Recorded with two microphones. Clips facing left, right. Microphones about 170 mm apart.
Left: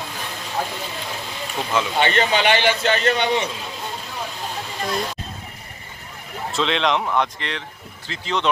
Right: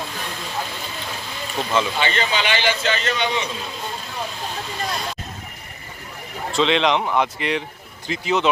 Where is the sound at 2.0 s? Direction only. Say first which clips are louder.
Left 4 dB; 60° left (ahead or behind).